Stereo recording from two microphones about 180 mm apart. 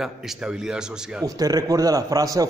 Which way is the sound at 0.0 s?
Centre (ahead or behind).